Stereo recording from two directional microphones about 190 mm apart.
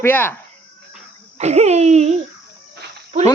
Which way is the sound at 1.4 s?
35° right (ahead or behind).